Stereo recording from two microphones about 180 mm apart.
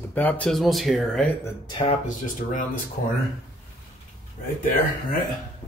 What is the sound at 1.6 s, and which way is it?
Speech, 30° left (ahead or behind).